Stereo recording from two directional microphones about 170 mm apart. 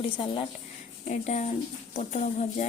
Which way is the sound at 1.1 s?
45° left (ahead or behind).